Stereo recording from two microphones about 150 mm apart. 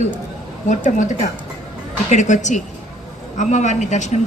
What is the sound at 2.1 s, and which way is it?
A woman's voice, 50° left (ahead or behind).